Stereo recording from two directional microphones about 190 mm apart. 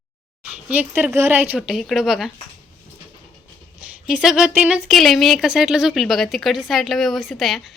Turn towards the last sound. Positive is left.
turn(degrees=0)  # may be behind; listen again after turning